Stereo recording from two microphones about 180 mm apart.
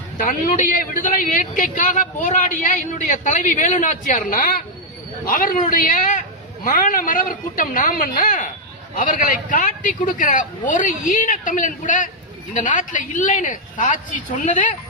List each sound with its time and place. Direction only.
0.3 s a man's voice: 50° left (ahead or behind)